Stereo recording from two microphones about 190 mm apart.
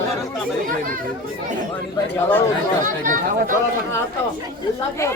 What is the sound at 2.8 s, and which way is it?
Speech, 45° right (ahead or behind).